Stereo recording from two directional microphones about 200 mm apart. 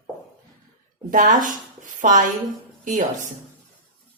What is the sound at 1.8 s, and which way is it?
Dishes, 40° right (ahead or behind).